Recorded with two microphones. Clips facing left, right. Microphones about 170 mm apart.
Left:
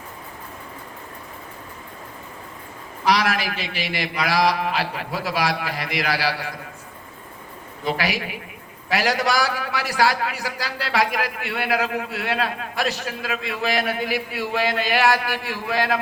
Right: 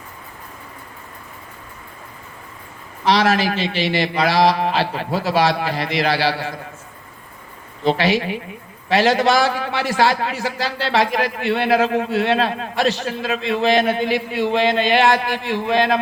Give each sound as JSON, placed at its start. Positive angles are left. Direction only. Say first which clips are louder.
{"t": 3.0, "sound": "a man's voice", "louder": "right 4 dB", "side_deg": -30}
{"t": 7.9, "sound": "a man's voice", "louder": "right 7 dB", "side_deg": -25}